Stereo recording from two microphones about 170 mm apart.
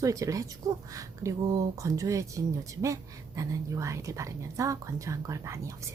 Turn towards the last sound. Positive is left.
turn(degrees=-20)  # may be behind; listen again after turning